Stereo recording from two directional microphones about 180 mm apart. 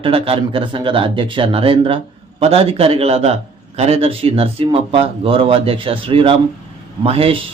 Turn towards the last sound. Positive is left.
turn(degrees=-30)  # may be behind; listen again after turning